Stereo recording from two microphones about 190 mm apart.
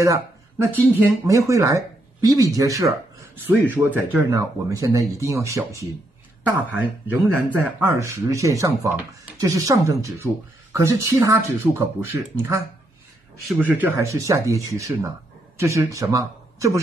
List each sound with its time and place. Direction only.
0.0 s speech: 15° right (ahead or behind)
13.5 s a man's voice: 10° right (ahead or behind)